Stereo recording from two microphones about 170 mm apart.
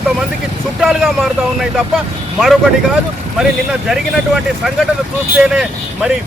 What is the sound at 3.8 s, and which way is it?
Speech, centre (ahead or behind).